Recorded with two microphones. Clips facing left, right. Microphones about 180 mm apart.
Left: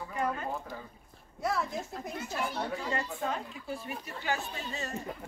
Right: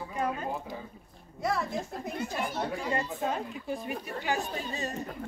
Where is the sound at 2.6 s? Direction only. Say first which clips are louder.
Right 3 dB; 15° right (ahead or behind).